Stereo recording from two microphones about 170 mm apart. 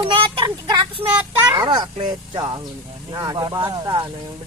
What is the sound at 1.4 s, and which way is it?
Speech, 20° right (ahead or behind).